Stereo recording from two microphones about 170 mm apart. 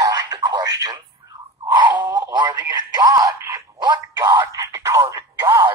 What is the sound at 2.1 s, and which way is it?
Speech, 25° right (ahead or behind).